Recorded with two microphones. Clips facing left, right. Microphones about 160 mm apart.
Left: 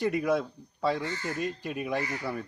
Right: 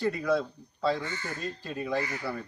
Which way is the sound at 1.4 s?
15° left (ahead or behind).